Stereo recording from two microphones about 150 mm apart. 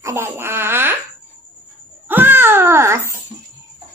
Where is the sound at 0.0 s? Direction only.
15° right (ahead or behind).